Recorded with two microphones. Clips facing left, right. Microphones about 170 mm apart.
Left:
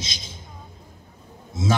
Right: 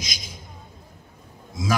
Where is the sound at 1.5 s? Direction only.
25° left (ahead or behind).